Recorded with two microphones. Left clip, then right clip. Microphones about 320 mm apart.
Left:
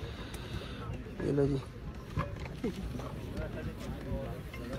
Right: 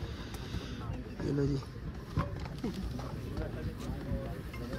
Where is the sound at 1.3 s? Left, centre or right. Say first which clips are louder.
Left 3 dB; left.